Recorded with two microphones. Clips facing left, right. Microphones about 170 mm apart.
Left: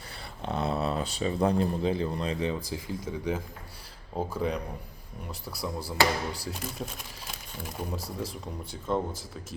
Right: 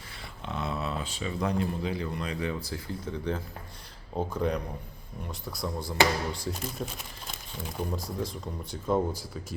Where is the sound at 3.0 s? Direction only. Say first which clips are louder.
Even; 10° left (ahead or behind).